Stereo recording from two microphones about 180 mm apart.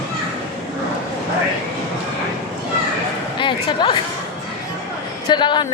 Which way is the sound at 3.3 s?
25° left (ahead or behind).